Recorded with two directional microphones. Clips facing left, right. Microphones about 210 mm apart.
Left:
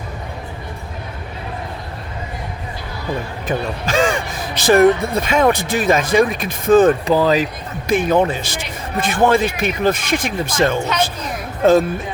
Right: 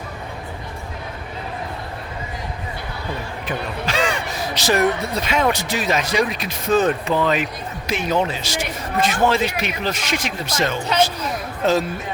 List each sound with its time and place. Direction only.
3.4 s speech: 45° left (ahead or behind)
7.0 s speech: 35° left (ahead or behind)
7.9 s speech: 50° left (ahead or behind)